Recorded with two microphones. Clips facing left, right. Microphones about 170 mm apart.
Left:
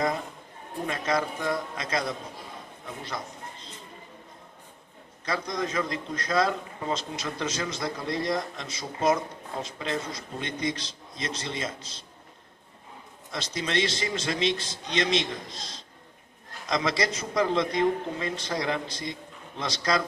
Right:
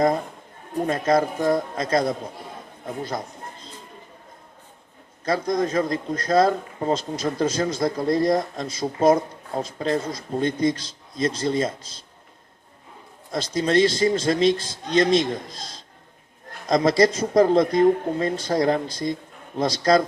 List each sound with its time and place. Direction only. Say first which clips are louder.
0.9 s speech: right 7 dB; 45° right (ahead or behind)
5.2 s a man's voice: right 8 dB; 45° right (ahead or behind)
13.3 s speech: right 9 dB; 40° right (ahead or behind)
16.6 s a man's voice: right 9 dB; 45° right (ahead or behind)